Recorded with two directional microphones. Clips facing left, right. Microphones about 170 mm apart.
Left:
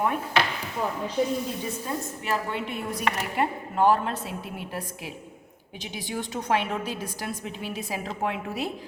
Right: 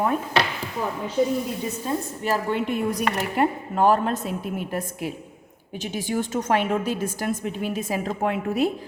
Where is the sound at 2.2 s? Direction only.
40° right (ahead or behind).